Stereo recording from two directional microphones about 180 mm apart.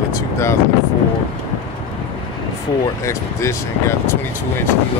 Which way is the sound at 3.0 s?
15° left (ahead or behind).